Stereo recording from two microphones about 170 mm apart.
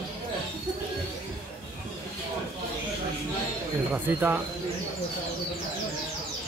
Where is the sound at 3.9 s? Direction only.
10° right (ahead or behind).